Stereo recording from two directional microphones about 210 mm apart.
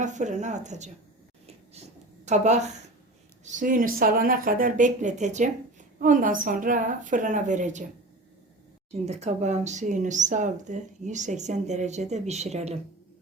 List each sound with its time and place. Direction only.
0.0 s speech: 35° right (ahead or behind)
2.2 s speech: 35° right (ahead or behind)
8.9 s speech: 30° right (ahead or behind)